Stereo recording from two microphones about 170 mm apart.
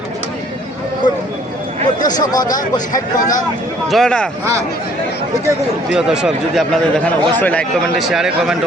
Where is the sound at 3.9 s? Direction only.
5° left (ahead or behind).